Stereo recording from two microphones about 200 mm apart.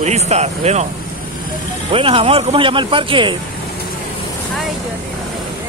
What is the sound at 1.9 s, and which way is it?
Speech, 25° right (ahead or behind).